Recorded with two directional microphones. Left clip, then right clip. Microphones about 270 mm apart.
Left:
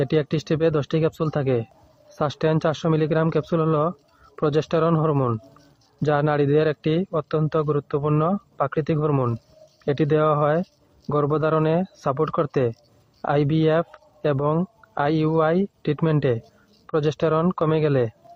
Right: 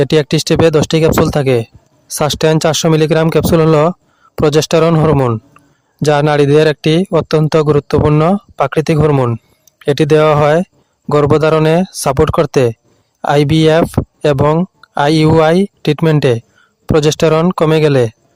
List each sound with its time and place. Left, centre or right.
0.0 s a man's voice: right